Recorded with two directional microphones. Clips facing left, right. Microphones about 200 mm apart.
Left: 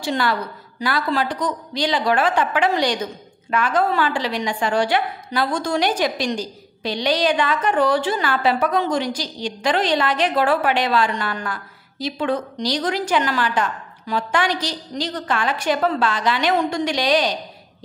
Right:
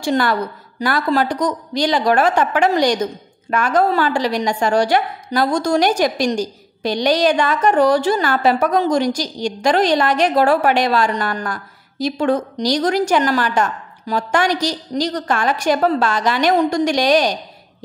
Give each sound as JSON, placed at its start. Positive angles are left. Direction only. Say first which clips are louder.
{"t": 0.0, "sound": "a woman's voice", "louder": "right 4 dB", "side_deg": -45}